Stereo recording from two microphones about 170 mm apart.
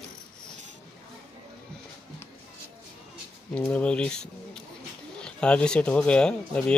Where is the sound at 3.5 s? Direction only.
5° left (ahead or behind).